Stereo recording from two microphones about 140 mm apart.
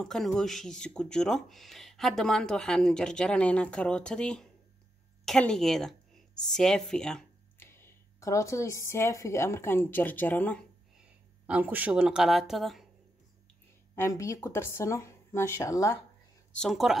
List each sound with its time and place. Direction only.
0.0 s a woman's voice: 5° left (ahead or behind)
7.5 s speech: 15° left (ahead or behind)
11.4 s speech: 10° right (ahead or behind)
13.9 s speech: 20° left (ahead or behind)
16.5 s speech: centre (ahead or behind)